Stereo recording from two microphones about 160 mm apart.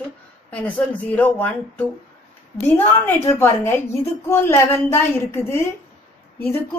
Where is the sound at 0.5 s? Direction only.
10° left (ahead or behind).